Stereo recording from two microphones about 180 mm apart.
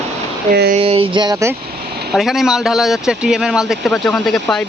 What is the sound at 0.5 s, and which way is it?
Speech, 60° right (ahead or behind).